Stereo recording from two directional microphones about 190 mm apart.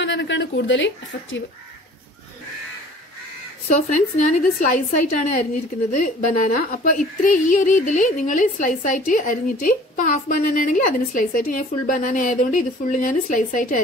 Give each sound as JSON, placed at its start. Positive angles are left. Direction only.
{"t": 0.0, "sound": "speech", "side_deg": 75}
{"t": 3.6, "sound": "a woman's voice", "side_deg": 40}